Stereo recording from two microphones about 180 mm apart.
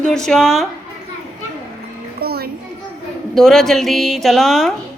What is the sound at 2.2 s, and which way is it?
Music, 60° right (ahead or behind).